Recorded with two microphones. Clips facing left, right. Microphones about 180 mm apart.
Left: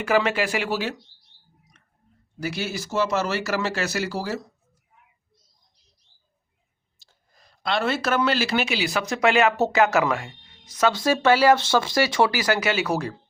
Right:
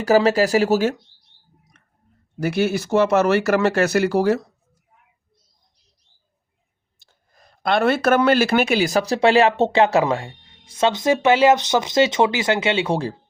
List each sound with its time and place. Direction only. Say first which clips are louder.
0.0 s speech: right 6 dB; 40° right (ahead or behind)
1.7 s a sound: right 2 dB; 55° right (ahead or behind)
2.4 s speech: right 9 dB; 55° right (ahead or behind)
7.0 s speech: right 5 dB; 55° right (ahead or behind); by 13.1 s 30° right (ahead or behind)